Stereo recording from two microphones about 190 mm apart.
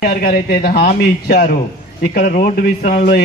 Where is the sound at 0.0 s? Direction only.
50° left (ahead or behind).